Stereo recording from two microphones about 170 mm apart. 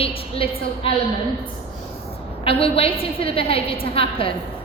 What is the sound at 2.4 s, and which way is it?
A woman's voice, 35° left (ahead or behind).